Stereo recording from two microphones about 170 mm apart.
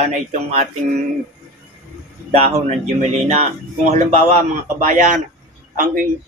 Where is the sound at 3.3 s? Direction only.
40° right (ahead or behind).